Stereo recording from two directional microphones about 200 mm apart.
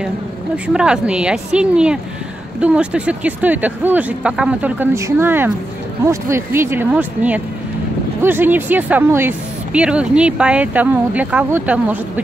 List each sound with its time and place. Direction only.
0.7 s a woman's voice: 5° right (ahead or behind)